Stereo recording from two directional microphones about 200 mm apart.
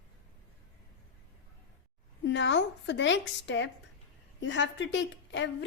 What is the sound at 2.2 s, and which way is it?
A woman's voice, 65° left (ahead or behind).